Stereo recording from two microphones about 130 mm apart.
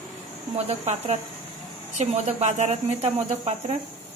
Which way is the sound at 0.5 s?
50° right (ahead or behind).